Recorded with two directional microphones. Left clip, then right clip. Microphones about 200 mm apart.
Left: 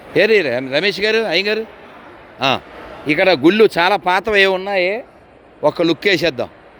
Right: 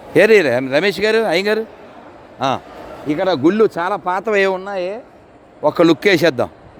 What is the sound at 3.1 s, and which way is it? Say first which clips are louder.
Speech: left 3 dB; 10° left (ahead or behind).